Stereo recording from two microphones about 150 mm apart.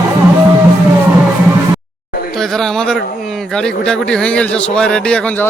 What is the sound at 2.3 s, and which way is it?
Speech, centre (ahead or behind).